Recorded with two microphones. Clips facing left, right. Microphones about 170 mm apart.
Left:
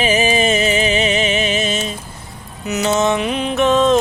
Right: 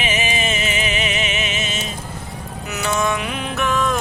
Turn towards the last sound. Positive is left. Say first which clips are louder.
# left 7 dB
turn(degrees=20)  # may be behind; listen again after turning